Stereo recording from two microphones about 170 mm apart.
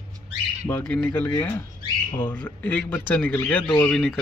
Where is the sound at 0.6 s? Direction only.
10° left (ahead or behind).